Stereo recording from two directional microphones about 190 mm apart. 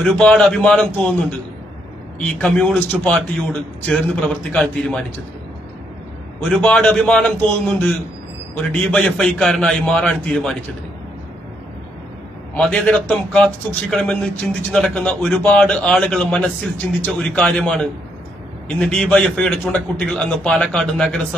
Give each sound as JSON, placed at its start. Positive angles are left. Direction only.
{"t": 0.0, "sound": "a man's voice", "side_deg": 5}
{"t": 2.1, "sound": "a man's voice", "side_deg": 5}
{"t": 6.5, "sound": "a man's voice", "side_deg": 5}
{"t": 12.5, "sound": "a man's voice", "side_deg": 0}